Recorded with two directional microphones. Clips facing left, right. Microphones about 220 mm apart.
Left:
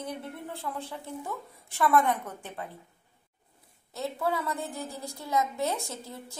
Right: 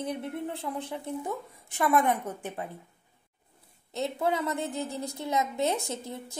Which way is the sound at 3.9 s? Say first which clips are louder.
Right 2 dB; 20° right (ahead or behind).